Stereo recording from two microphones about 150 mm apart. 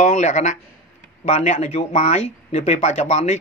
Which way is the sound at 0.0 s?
55° left (ahead or behind).